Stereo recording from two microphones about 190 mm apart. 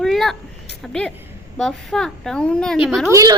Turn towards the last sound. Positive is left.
turn(degrees=-15)  # may be behind; listen again after turning